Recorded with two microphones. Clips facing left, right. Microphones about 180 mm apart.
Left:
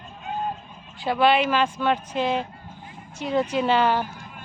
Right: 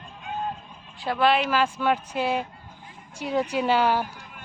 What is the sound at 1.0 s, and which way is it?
Speech, centre (ahead or behind).